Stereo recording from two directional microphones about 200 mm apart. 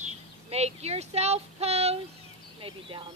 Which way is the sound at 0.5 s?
30° right (ahead or behind).